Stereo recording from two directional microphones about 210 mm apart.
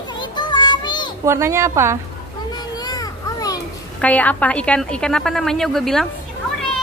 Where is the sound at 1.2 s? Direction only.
15° right (ahead or behind).